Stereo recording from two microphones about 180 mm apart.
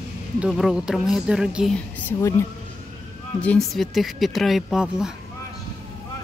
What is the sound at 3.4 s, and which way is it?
Speech, 5° left (ahead or behind).